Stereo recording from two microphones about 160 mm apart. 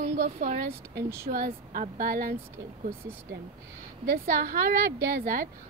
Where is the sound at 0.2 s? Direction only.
45° right (ahead or behind).